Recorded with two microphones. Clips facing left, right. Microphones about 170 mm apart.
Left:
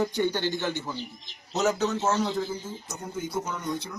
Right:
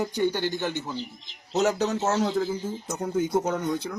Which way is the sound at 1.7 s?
35° right (ahead or behind).